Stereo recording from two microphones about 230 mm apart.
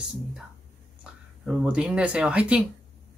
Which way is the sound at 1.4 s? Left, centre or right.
Centre.